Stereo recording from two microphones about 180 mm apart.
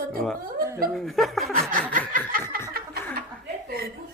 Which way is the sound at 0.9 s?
Centre (ahead or behind).